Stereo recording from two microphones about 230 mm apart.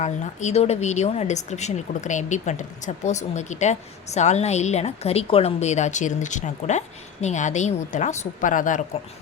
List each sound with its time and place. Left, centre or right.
0.0 s a woman's voice: left